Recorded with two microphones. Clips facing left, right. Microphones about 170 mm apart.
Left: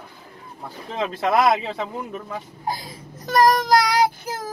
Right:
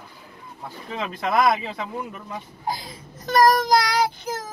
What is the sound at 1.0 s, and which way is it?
A man's voice, 20° left (ahead or behind).